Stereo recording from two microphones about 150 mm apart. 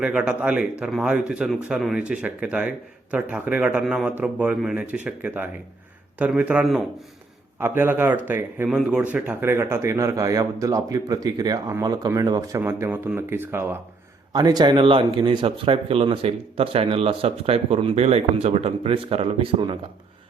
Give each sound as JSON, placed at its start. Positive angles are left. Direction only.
{"t": 0.0, "sound": "speech", "side_deg": -5}
{"t": 14.3, "sound": "speech", "side_deg": -25}